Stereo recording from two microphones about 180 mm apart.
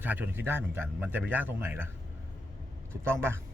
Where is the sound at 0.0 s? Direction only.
10° right (ahead or behind).